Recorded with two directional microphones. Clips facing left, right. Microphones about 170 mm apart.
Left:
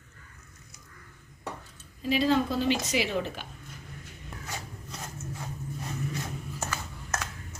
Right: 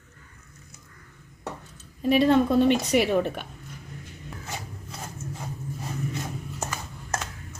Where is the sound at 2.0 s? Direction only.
60° right (ahead or behind).